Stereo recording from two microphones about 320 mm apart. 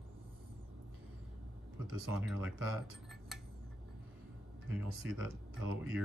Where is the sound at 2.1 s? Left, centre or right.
Centre.